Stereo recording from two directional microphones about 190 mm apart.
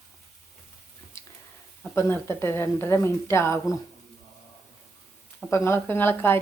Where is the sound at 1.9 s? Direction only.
15° left (ahead or behind).